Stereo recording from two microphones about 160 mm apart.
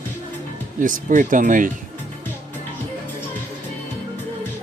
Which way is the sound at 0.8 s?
55° right (ahead or behind).